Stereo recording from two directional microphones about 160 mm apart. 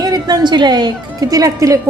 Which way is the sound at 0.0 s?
25° right (ahead or behind).